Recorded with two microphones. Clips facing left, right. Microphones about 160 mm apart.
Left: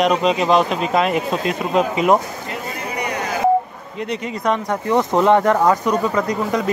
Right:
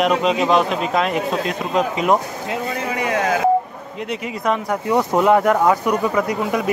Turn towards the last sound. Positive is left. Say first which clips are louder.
# even
turn(degrees=-10)  # may be behind; listen again after turning